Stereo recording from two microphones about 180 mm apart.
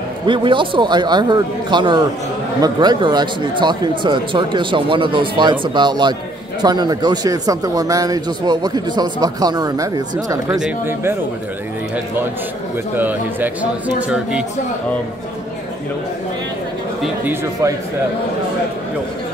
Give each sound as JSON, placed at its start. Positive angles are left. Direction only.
{"t": 0.3, "sound": "speech", "side_deg": -25}
{"t": 12.9, "sound": "speech", "side_deg": -10}
{"t": 17.0, "sound": "speech", "side_deg": -10}